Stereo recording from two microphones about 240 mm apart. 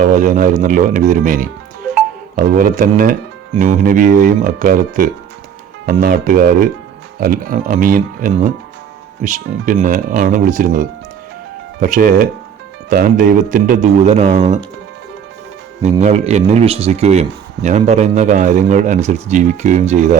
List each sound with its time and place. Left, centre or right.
0.0 s speech: right
2.6 s speech: right
15.8 s speech: right